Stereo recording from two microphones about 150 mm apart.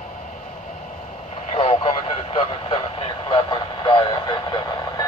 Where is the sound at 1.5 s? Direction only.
45° left (ahead or behind); by 5.1 s 25° left (ahead or behind).